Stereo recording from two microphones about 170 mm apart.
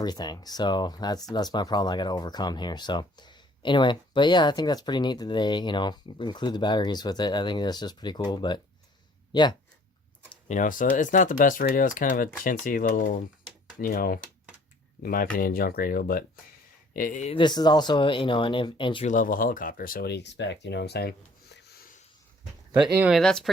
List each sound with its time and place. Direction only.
0.0 s speech: 25° left (ahead or behind)
10.5 s speech: 50° left (ahead or behind)
16.9 s speech: 50° left (ahead or behind)
17.3 s speech: 25° left (ahead or behind)
19.0 s speech: 50° left (ahead or behind); by 21.8 s 65° left (ahead or behind)
22.9 s speech: 10° right (ahead or behind)
23.1 s speech: centre (ahead or behind)